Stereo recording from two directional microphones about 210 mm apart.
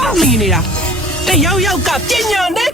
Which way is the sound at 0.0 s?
Centre (ahead or behind).